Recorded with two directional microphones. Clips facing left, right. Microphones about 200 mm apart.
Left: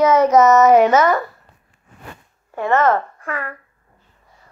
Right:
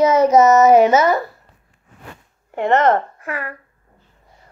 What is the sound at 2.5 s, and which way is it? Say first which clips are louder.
Speech: right 1 dB; 20° right (ahead or behind).